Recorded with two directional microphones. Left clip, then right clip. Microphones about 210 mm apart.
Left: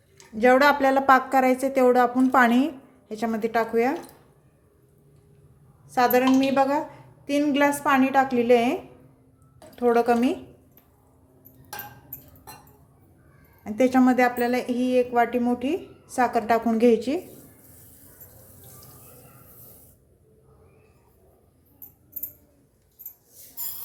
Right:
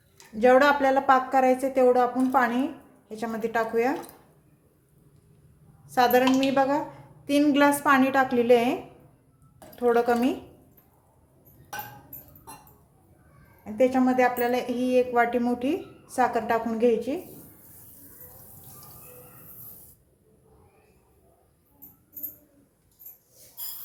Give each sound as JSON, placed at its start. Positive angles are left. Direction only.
{"t": 0.3, "sound": "a woman's voice", "side_deg": 15}
{"t": 5.9, "sound": "a woman's voice", "side_deg": 5}
{"t": 13.7, "sound": "a woman's voice", "side_deg": 25}